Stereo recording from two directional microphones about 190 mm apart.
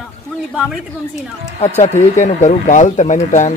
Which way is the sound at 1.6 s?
35° left (ahead or behind).